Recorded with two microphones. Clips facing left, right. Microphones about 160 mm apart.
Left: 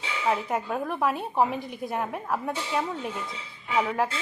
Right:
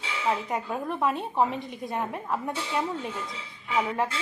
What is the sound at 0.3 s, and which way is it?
Speech, 5° left (ahead or behind).